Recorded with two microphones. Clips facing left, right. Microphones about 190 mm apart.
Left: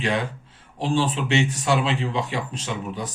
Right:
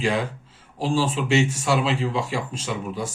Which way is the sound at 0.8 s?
Centre (ahead or behind).